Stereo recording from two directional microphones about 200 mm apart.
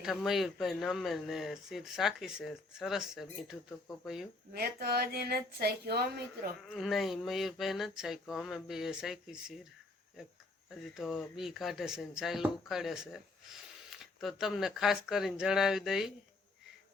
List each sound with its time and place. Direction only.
0.0 s speech: centre (ahead or behind)
4.5 s a sound: 50° right (ahead or behind)
6.7 s speech: centre (ahead or behind)
10.7 s speech: centre (ahead or behind)